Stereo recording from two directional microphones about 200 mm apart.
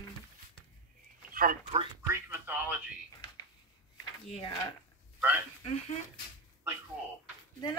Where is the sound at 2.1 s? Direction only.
10° right (ahead or behind).